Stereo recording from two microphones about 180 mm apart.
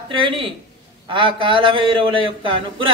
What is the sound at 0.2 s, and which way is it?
Speech, 30° right (ahead or behind).